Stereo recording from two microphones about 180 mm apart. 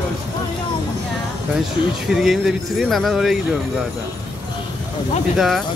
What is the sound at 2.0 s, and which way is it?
Speech, centre (ahead or behind).